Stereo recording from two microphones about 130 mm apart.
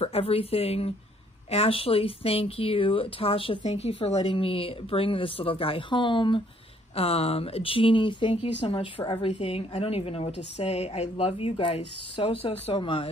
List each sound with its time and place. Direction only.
0.0 s speech: 50° left (ahead or behind)
7.0 s speech: 50° left (ahead or behind)